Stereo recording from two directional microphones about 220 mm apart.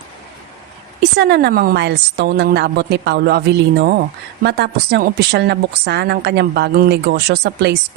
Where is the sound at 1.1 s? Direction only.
50° right (ahead or behind).